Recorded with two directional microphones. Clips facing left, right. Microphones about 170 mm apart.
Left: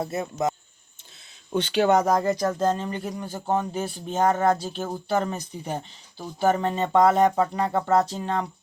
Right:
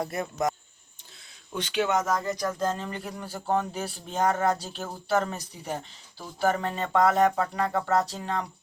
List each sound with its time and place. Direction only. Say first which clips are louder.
0.0 s speech: left 2 dB; 25° left (ahead or behind)
1.5 s speech: left 6 dB; 30° left (ahead or behind)